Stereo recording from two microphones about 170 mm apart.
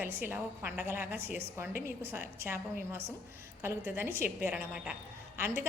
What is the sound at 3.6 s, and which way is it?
A woman's voice, 15° right (ahead or behind).